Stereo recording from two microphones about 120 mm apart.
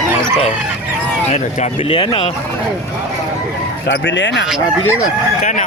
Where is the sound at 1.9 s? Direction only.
45° left (ahead or behind).